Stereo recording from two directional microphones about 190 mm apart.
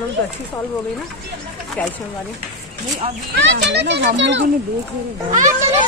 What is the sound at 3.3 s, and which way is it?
A child's voice, 65° right (ahead or behind).